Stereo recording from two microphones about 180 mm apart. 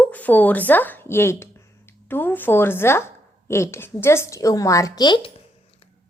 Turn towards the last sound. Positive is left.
turn(degrees=25)  # may be behind; listen again after turning